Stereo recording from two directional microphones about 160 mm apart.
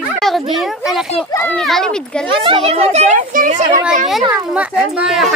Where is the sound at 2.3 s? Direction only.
35° right (ahead or behind).